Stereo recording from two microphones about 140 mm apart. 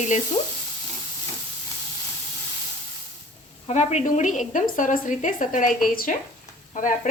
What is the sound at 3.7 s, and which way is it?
A woman's voice, 55° left (ahead or behind).